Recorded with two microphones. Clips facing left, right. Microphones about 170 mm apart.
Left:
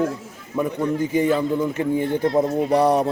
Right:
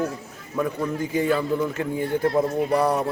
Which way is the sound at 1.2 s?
20° left (ahead or behind).